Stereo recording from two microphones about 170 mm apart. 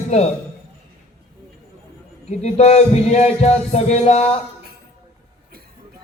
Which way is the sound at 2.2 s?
40° left (ahead or behind).